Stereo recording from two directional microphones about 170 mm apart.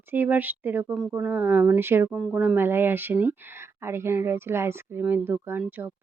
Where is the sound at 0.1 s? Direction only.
10° right (ahead or behind).